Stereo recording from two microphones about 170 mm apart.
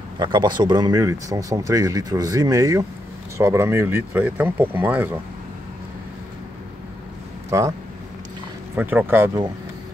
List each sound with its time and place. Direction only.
0.2 s speech: 25° right (ahead or behind); by 5.2 s 10° right (ahead or behind)
7.4 s speech: 15° right (ahead or behind)
8.7 s speech: 10° right (ahead or behind)